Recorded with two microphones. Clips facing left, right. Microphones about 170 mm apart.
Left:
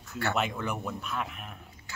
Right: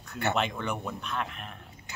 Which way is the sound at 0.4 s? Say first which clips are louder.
Right 1 dB; 5° left (ahead or behind).